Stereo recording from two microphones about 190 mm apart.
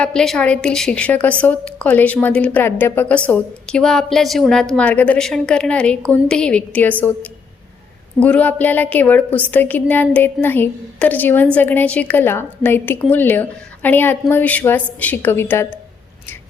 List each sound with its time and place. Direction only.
0.0 s a woman's voice: 5° left (ahead or behind)
8.2 s a woman's voice: 5° left (ahead or behind)